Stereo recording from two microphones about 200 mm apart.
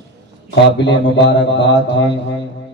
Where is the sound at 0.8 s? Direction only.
60° left (ahead or behind).